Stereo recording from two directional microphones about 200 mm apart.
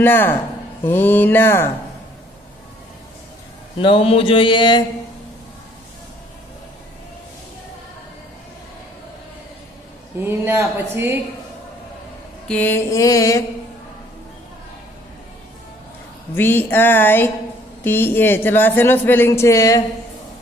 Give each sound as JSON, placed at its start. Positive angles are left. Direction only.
{"t": 0.0, "sound": "speech", "side_deg": 10}
{"t": 3.8, "sound": "speech", "side_deg": 25}
{"t": 10.2, "sound": "speech", "side_deg": -10}
{"t": 12.4, "sound": "speech", "side_deg": 10}
{"t": 16.3, "sound": "speech", "side_deg": 10}